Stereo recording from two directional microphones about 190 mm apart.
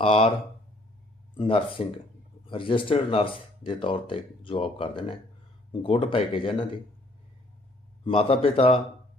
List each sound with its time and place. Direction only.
0.0 s speech: 30° left (ahead or behind)
1.4 s speech: 30° left (ahead or behind)
8.0 s speech: 30° left (ahead or behind)